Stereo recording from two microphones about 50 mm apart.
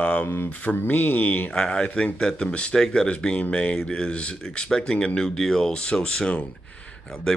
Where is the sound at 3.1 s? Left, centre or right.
Left.